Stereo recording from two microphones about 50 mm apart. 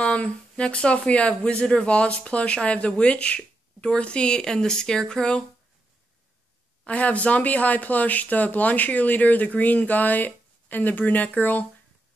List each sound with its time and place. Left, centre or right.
0.0 s speech: left
6.9 s speech: left